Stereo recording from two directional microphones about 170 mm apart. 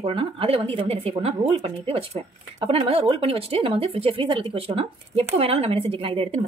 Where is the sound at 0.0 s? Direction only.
35° right (ahead or behind).